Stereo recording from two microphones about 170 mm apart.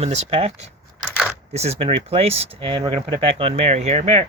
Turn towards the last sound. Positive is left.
turn(degrees=-40)  # may be behind; listen again after turning